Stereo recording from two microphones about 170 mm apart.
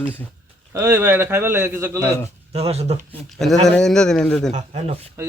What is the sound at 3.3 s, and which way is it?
Speech, centre (ahead or behind).